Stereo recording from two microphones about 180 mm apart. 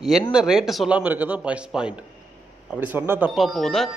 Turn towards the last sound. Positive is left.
turn(degrees=0)  # may be behind; listen again after turning